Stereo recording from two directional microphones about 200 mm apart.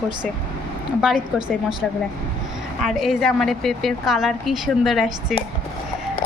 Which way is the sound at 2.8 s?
Centre (ahead or behind).